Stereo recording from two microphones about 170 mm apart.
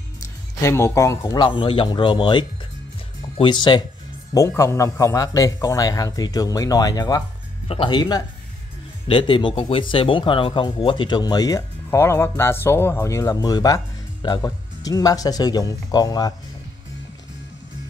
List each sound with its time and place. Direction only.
0.2 s speech: 15° left (ahead or behind)
7.6 s speech: 30° left (ahead or behind)